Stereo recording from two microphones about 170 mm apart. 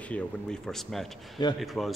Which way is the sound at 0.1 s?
5° left (ahead or behind).